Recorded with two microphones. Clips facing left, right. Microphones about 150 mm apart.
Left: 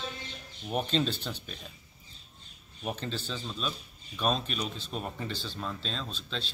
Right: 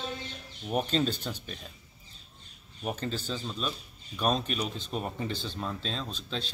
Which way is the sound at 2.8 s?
10° right (ahead or behind).